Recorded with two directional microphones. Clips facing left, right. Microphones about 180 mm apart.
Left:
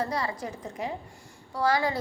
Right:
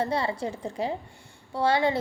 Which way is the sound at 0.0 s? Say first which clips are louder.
Right 3 dB; 25° right (ahead or behind).